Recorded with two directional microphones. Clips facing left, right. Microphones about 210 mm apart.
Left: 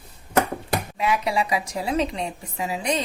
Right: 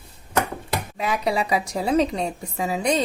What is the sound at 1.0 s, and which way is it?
A woman's voice, 40° right (ahead or behind).